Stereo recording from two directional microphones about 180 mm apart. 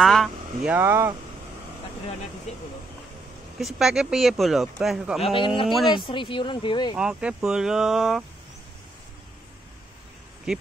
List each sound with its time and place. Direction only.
0.0 s a sound: centre (ahead or behind)
0.7 s speech: 15° right (ahead or behind)
2.5 s speech: 35° left (ahead or behind)
3.5 s speech: centre (ahead or behind)
5.2 s speech: 30° left (ahead or behind)
5.7 s speech: centre (ahead or behind)
5.9 s speech: 30° left (ahead or behind)
7.0 s speech: 5° right (ahead or behind)
10.5 s speech: 5° right (ahead or behind)